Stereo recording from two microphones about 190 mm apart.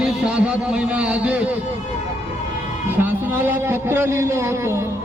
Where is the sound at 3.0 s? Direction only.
10° right (ahead or behind).